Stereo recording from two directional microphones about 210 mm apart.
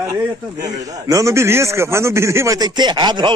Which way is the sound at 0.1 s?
20° right (ahead or behind).